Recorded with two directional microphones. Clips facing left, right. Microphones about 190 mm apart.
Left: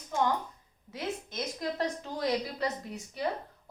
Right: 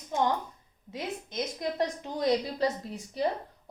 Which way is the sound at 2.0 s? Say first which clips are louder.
Right 6 dB; 25° right (ahead or behind).